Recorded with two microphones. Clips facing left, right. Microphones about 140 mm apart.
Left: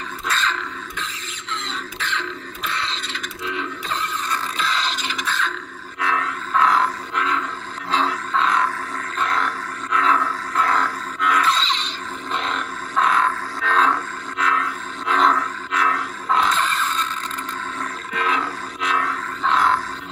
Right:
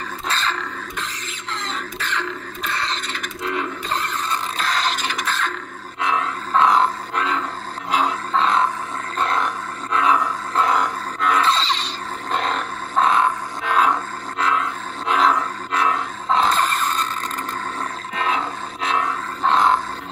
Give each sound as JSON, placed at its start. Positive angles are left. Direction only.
{"t": 0.3, "sound": "dog", "side_deg": -35}
{"t": 1.5, "sound": "a sound", "side_deg": -50}
{"t": 4.6, "sound": "scrape", "side_deg": -45}
{"t": 5.9, "sound": "roar", "side_deg": -20}
{"t": 7.2, "sound": "a sound", "side_deg": -35}
{"t": 8.3, "sound": "grunt", "side_deg": -30}
{"t": 9.1, "sound": "roar", "side_deg": -30}
{"t": 9.9, "sound": "roar", "side_deg": -15}
{"t": 11.1, "sound": "roar", "side_deg": -30}
{"t": 15.7, "sound": "a sound", "side_deg": -25}
{"t": 16.5, "sound": "a sound", "side_deg": -45}
{"t": 18.1, "sound": "roar", "side_deg": -30}
{"t": 19.5, "sound": "grunt", "side_deg": -20}